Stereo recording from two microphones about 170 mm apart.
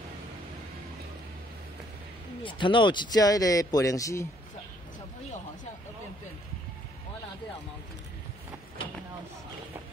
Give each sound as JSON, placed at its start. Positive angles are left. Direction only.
{"t": 2.4, "sound": "a man's voice", "side_deg": 30}